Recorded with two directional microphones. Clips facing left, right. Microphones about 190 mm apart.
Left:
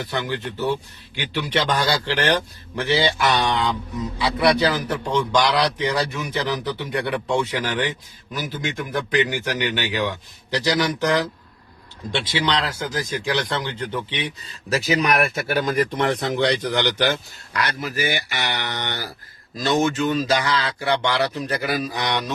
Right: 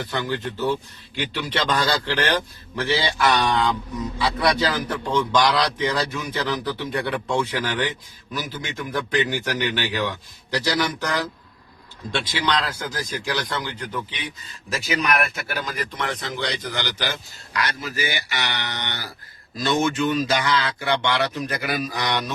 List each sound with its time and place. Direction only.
0.0 s a man's voice: 15° left (ahead or behind)
15.6 s speech: 55° left (ahead or behind)
19.5 s speech: 35° left (ahead or behind)